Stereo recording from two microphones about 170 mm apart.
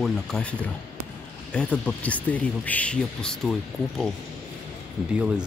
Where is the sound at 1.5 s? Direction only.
5° left (ahead or behind).